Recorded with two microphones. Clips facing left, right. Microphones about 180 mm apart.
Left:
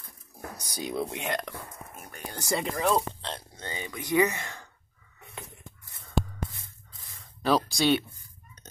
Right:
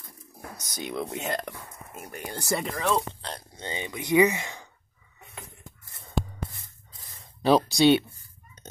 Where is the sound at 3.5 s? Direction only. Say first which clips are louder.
Right 3 dB; 20° right (ahead or behind).